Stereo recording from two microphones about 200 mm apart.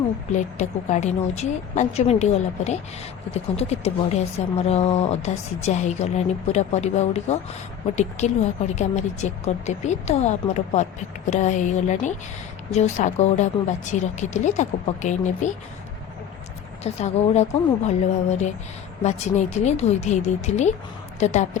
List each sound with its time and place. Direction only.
0.3 s speech: 35° left (ahead or behind)
16.8 s speech: 35° left (ahead or behind)